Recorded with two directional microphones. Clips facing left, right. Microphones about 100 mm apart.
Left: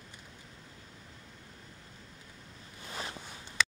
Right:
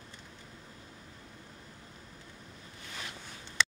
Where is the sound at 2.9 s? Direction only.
30° left (ahead or behind).